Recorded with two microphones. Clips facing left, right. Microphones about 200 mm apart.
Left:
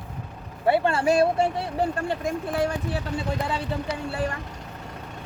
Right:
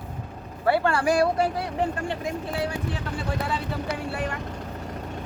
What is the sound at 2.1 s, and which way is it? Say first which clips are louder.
Speech: left 2 dB; 50° left (ahead or behind).